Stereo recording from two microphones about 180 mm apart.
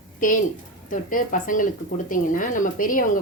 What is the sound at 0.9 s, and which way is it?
Speech, 50° left (ahead or behind).